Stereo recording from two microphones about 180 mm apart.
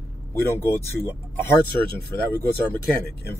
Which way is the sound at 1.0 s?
15° left (ahead or behind).